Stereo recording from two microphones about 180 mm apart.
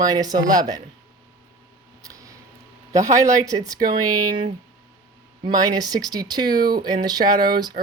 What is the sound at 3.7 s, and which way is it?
Speech, 50° right (ahead or behind).